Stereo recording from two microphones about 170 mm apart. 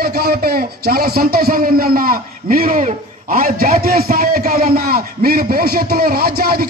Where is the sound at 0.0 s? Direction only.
65° right (ahead or behind).